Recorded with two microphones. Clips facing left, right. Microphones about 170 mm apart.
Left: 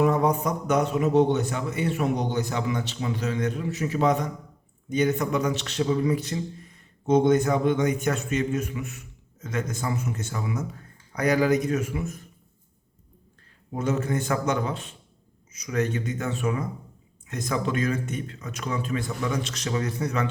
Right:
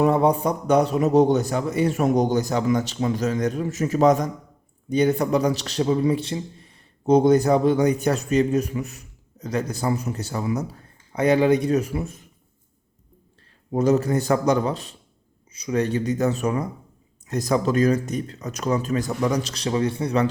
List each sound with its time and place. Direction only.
0.0 s a man's voice: 30° right (ahead or behind)
13.7 s a man's voice: 35° right (ahead or behind)